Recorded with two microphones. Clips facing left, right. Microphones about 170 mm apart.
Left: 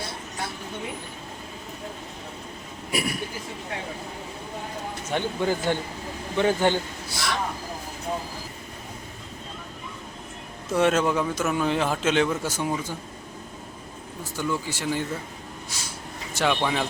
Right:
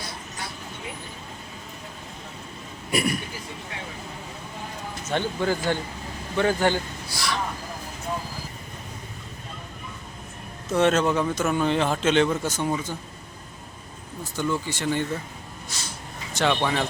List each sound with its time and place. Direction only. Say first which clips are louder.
2.9 s speech: right 3 dB; 5° left (ahead or behind)
5.0 s a man's voice: right 1 dB; 15° left (ahead or behind)
10.8 s speech: right 1 dB; 10° left (ahead or behind)
14.3 s speech: right 2 dB; 10° left (ahead or behind)
15.7 s snort: right 3 dB; 10° left (ahead or behind)
16.3 s speech: right 1 dB; 5° left (ahead or behind)